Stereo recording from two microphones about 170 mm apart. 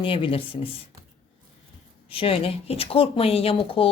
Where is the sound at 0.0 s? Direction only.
30° left (ahead or behind).